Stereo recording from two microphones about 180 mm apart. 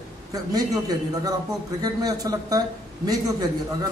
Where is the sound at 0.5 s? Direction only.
20° right (ahead or behind).